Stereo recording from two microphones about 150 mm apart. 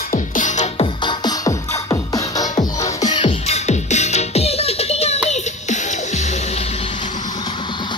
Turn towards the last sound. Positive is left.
turn(degrees=50)  # may be behind; listen again after turning